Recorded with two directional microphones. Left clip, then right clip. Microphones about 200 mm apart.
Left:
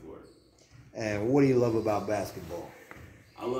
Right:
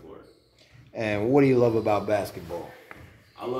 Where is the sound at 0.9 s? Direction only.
45° right (ahead or behind).